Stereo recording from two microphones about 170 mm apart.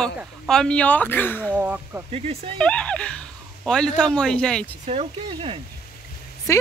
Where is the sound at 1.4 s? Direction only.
10° right (ahead or behind).